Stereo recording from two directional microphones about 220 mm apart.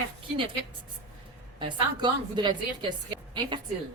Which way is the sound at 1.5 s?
20° right (ahead or behind).